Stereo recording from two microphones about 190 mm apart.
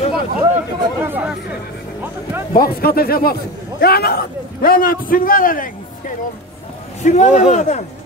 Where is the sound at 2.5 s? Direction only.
50° left (ahead or behind).